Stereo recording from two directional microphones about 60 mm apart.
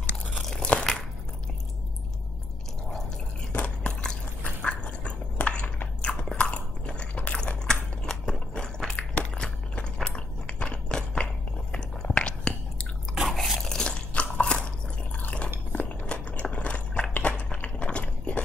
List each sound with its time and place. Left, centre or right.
0.3 s crunch: centre
0.6 s crunch: centre
3.5 s chewing: centre
9.1 s a sound: centre
11.7 s chewing: centre
13.1 s biting: centre
15.2 s chewing: left
15.7 s biting: left